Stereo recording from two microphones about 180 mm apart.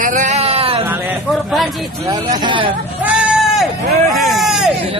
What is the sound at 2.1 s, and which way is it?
Speech, 20° right (ahead or behind).